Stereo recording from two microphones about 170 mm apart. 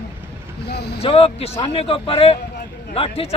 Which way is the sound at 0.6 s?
75° left (ahead or behind).